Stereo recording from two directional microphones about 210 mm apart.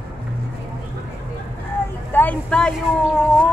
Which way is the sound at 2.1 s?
10° left (ahead or behind).